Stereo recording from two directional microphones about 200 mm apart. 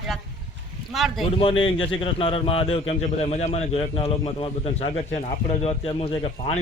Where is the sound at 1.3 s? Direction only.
25° left (ahead or behind).